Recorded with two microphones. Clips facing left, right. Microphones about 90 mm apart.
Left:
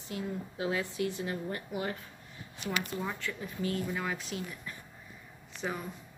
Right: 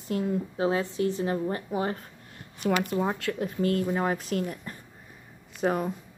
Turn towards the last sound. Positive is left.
turn(degrees=-50)  # may be behind; listen again after turning